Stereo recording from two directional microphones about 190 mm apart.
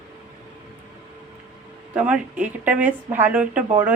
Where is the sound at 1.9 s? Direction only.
5° right (ahead or behind).